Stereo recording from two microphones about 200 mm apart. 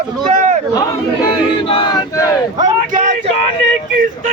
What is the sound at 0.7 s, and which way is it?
Battle cry, 20° left (ahead or behind).